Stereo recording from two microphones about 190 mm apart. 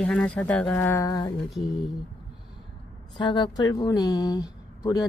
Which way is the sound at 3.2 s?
25° left (ahead or behind).